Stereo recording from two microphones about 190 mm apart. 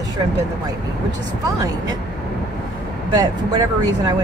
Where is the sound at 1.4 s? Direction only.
20° right (ahead or behind).